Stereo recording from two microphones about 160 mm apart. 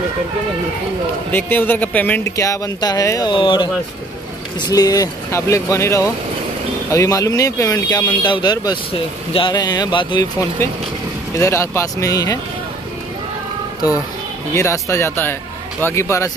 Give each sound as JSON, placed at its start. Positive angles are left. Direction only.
{"t": 1.3, "sound": "speech", "side_deg": 10}
{"t": 11.3, "sound": "speech", "side_deg": 20}
{"t": 14.5, "sound": "speech", "side_deg": 20}